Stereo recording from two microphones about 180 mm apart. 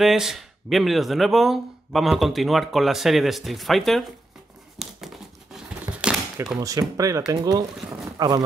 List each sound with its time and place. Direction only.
0.0 s speech: centre (ahead or behind)
4.7 s crumpling: centre (ahead or behind)
6.6 s speech: 20° right (ahead or behind)